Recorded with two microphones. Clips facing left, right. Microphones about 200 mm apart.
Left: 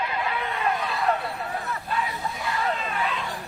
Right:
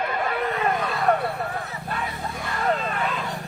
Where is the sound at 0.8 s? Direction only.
50° right (ahead or behind).